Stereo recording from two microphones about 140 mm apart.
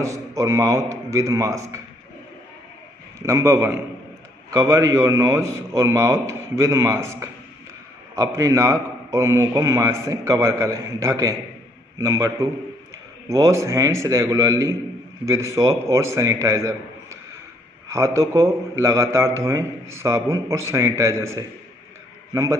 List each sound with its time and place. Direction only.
0.0 s a man's voice: 20° right (ahead or behind)
3.2 s a man's voice: 20° right (ahead or behind)